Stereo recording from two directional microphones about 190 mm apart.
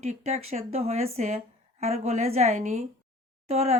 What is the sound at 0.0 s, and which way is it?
Speech, 35° right (ahead or behind).